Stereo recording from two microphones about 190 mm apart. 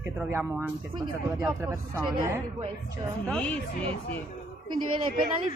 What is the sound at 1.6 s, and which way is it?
Speech, 15° right (ahead or behind).